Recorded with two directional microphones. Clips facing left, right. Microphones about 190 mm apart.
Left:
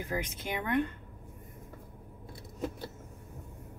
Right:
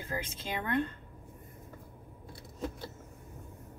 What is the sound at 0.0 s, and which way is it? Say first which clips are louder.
Speech: left 3 dB; 15° left (ahead or behind).